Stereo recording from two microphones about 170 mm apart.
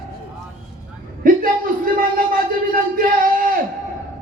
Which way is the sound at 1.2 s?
55° right (ahead or behind).